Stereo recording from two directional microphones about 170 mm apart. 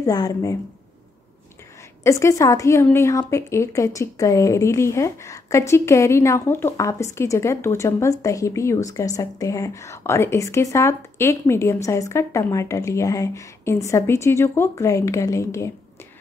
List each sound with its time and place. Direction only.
0.0 s speech: 20° left (ahead or behind)
2.0 s a woman's voice: 15° left (ahead or behind)